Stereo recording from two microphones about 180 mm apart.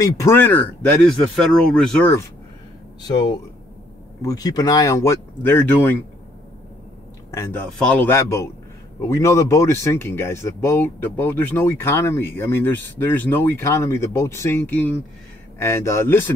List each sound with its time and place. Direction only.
0.0 s speech: 15° left (ahead or behind)
3.0 s speech: 25° left (ahead or behind)
7.2 s speech: 15° left (ahead or behind)